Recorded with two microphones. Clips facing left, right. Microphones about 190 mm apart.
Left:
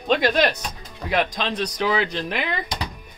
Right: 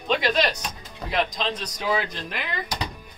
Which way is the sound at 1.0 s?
65° left (ahead or behind).